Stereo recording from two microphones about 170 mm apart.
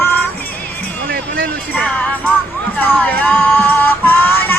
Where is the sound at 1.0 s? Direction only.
70° right (ahead or behind).